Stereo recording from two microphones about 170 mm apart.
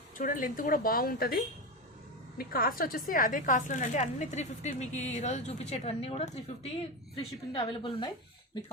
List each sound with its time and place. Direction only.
0.2 s speech: 50° left (ahead or behind)
2.4 s a woman's voice: 60° left (ahead or behind); by 8.1 s 30° left (ahead or behind)